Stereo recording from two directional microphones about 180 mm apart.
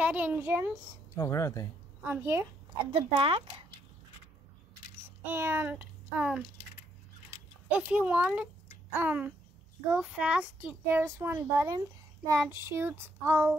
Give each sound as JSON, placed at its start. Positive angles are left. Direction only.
{"t": 0.0, "sound": "a child's voice", "side_deg": -10}
{"t": 1.1, "sound": "speech", "side_deg": 15}
{"t": 2.0, "sound": "a child's voice", "side_deg": -15}
{"t": 2.9, "sound": "speech", "side_deg": -30}
{"t": 5.2, "sound": "a child's voice", "side_deg": -15}
{"t": 7.9, "sound": "a child's voice", "side_deg": -10}